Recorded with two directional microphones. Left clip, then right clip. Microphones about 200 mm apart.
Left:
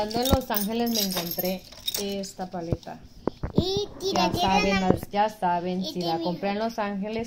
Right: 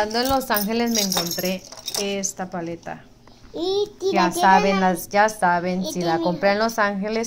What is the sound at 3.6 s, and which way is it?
Speech, 15° left (ahead or behind).